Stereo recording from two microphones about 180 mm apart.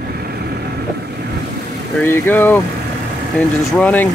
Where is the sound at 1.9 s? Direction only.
10° left (ahead or behind).